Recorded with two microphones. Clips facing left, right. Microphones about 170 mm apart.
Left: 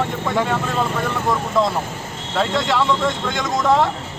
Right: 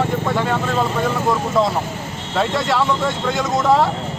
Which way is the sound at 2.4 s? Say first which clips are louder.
Right 1 dB; centre (ahead or behind).